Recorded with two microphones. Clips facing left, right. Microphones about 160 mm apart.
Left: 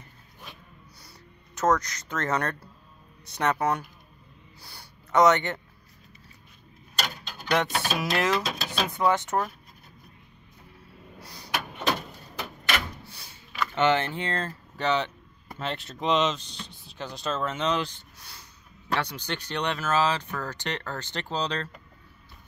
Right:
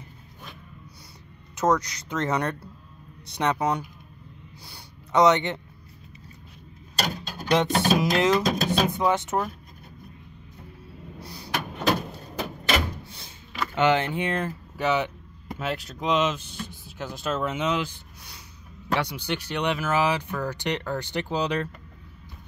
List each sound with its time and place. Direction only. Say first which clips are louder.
1.5 s speech: right 1 dB; 10° right (ahead or behind)
4.6 s a sound: right 2 dB; 15° right (ahead or behind)
7.0 s mechanisms: right 4 dB; 40° right (ahead or behind)
7.4 s speech: right 5 dB; 20° right (ahead or behind)
8.4 s speech: right 7 dB; 45° right (ahead or behind)
8.9 s speech: right 1 dB; 15° right (ahead or behind)
11.1 s vehicle: right 4 dB; 10° right (ahead or behind)
12.6 s door: right 4 dB; 25° right (ahead or behind)
13.7 s speech: right 2 dB; 15° right (ahead or behind)